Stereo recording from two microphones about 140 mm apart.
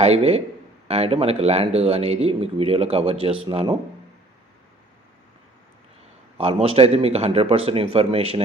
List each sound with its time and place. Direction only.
0.0 s speech: 50° right (ahead or behind)
6.3 s speech: 45° right (ahead or behind)